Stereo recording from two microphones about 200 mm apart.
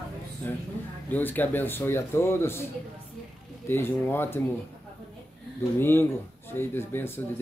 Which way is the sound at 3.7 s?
10° left (ahead or behind).